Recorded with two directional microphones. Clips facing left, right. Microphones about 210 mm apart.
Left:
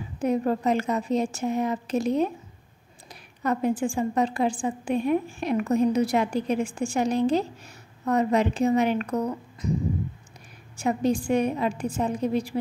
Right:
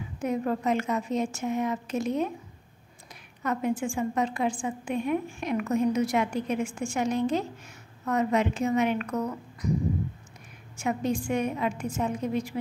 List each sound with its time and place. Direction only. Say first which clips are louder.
0.2 s a woman's voice: left 4 dB; 35° left (ahead or behind)
3.4 s a woman's voice: left 3 dB; 35° left (ahead or behind)
10.8 s a woman's voice: left 4 dB; 35° left (ahead or behind)